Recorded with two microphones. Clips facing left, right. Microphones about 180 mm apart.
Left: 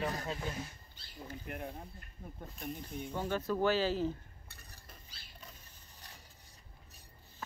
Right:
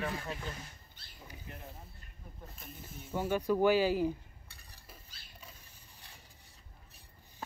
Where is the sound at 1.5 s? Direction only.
60° left (ahead or behind).